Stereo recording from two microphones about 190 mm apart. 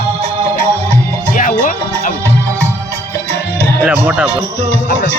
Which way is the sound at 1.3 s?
45° left (ahead or behind).